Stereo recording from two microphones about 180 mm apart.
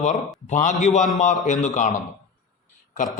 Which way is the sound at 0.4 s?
45° left (ahead or behind).